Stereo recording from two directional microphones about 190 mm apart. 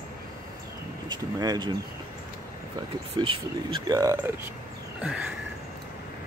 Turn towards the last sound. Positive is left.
turn(degrees=-5)  # may be behind; listen again after turning